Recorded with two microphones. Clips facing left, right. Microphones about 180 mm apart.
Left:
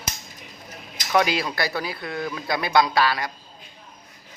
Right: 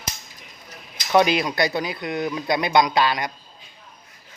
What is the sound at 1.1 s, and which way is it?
A man's voice, 20° right (ahead or behind).